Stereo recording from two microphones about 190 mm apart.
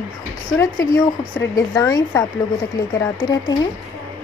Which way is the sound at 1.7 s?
20° left (ahead or behind).